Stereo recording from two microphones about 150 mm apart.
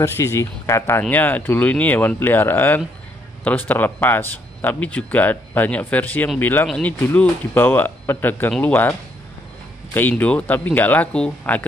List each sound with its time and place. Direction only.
0.0 s speech: 20° left (ahead or behind)
9.9 s speech: 10° left (ahead or behind)